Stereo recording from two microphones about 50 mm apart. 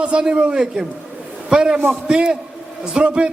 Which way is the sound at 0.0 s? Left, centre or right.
Centre.